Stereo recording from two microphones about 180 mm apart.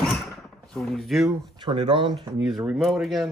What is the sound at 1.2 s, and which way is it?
Speech, 25° right (ahead or behind).